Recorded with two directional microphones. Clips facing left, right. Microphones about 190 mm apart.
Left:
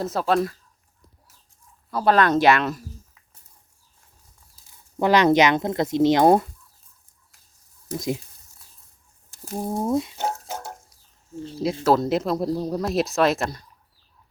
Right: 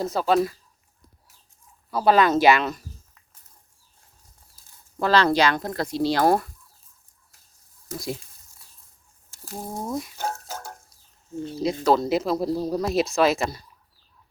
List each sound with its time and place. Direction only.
0.0 s speech: centre (ahead or behind)
1.9 s speech: 5° right (ahead or behind)
4.9 s speech: 15° left (ahead or behind)
7.9 s speech: 20° left (ahead or behind)
9.3 s water: 20° left (ahead or behind)
11.6 s speech: 5° left (ahead or behind)